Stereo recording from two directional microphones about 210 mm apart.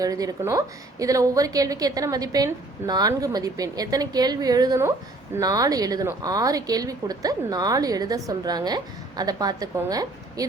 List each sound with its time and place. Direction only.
0.0 s a woman's voice: 15° right (ahead or behind)